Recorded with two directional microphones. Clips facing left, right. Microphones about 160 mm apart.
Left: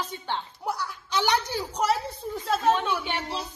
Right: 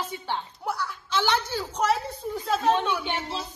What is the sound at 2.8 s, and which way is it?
Speech, centre (ahead or behind).